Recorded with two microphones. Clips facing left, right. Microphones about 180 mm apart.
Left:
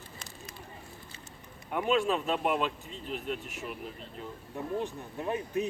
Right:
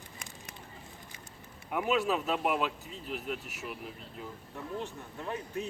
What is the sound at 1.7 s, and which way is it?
Speech, 5° right (ahead or behind).